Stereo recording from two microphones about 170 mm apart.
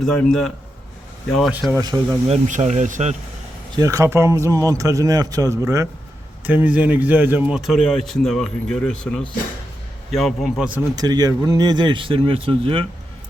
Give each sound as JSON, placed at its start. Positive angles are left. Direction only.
{"t": 0.0, "sound": "speech", "side_deg": 5}
{"t": 2.3, "sound": "speech", "side_deg": -40}
{"t": 3.8, "sound": "speech", "side_deg": -20}
{"t": 10.9, "sound": "speech", "side_deg": -20}